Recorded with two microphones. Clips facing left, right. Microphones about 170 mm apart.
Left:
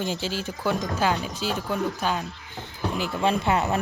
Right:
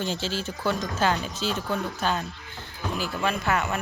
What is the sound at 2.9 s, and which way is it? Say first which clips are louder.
Speech: left 3 dB; 25° left (ahead or behind).